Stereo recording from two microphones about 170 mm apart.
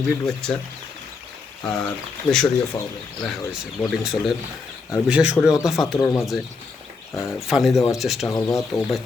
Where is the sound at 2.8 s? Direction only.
15° left (ahead or behind).